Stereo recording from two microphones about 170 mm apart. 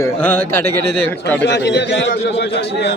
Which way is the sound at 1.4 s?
90° left.